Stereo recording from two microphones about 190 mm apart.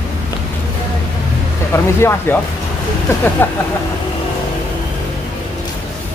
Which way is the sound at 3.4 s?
10° left (ahead or behind).